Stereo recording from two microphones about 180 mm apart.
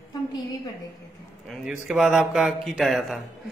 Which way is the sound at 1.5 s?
Centre (ahead or behind).